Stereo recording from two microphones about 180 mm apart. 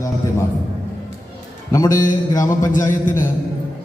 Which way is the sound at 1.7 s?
20° left (ahead or behind).